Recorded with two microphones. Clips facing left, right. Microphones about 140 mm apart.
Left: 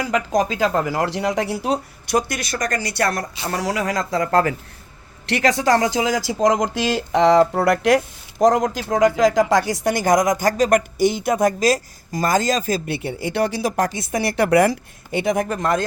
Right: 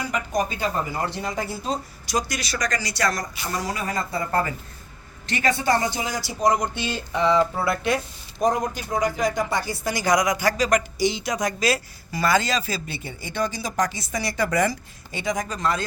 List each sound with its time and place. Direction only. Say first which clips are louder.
0.0 s speech: left 5 dB; 90° left; by 3.2 s 60° left (ahead or behind)
3.5 s speech: left 5 dB; 75° left (ahead or behind)
5.2 s speech: left 5 dB; 75° left (ahead or behind)
9.9 s a woman's voice: left 4 dB; 50° left (ahead or behind)
13.0 s a woman's voice: left 6 dB; 70° left (ahead or behind)